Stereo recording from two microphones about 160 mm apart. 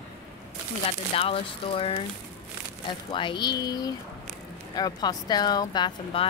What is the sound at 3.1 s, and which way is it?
Speech, 30° left (ahead or behind).